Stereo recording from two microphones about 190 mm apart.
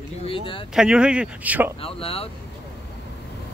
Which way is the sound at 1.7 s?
30° left (ahead or behind).